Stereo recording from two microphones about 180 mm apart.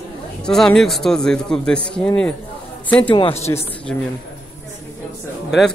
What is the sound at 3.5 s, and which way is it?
Speech, 20° left (ahead or behind).